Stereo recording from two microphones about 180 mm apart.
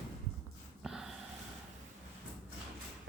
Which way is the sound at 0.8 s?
Centre (ahead or behind).